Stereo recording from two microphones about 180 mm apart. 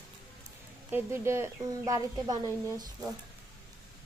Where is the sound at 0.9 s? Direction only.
15° right (ahead or behind).